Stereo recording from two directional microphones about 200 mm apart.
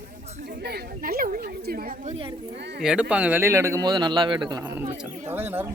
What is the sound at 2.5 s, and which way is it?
Speech, 55° right (ahead or behind).